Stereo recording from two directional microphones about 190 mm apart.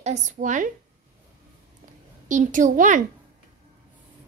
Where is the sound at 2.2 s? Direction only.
40° right (ahead or behind).